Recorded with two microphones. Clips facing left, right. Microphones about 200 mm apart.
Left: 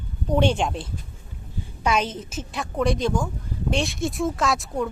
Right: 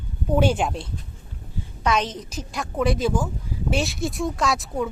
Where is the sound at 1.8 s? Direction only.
10° left (ahead or behind).